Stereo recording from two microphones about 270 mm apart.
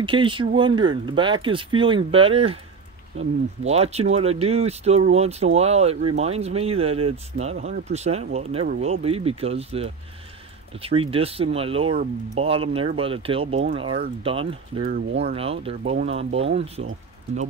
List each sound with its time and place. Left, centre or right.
0.0 s speech: centre
14.9 s speech: right
15.3 s speech: right